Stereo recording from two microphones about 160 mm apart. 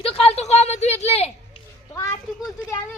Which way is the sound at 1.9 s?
20° left (ahead or behind).